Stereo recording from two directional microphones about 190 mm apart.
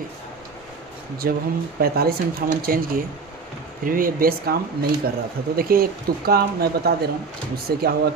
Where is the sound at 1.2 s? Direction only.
50° right (ahead or behind).